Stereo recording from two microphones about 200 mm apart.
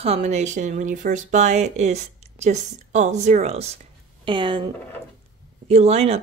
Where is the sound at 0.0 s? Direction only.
30° right (ahead or behind).